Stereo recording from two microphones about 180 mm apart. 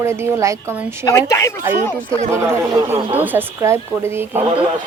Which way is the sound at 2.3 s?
15° right (ahead or behind).